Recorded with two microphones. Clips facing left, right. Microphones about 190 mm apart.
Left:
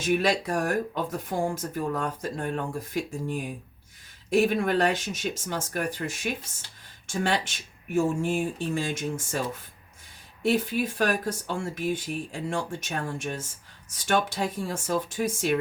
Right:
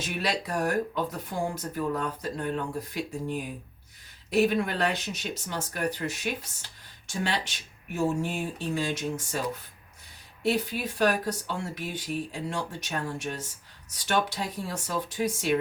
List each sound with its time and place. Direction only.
0.0 s speech: 50° left (ahead or behind)
4.3 s speech: 50° left (ahead or behind)
10.4 s speech: 50° left (ahead or behind)